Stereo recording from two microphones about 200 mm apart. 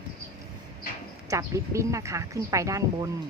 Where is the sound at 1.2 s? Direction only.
15° right (ahead or behind).